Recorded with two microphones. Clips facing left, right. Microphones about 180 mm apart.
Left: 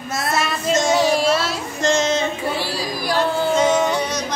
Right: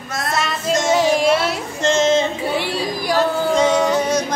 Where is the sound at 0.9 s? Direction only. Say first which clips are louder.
Right 2 dB; 15° right (ahead or behind).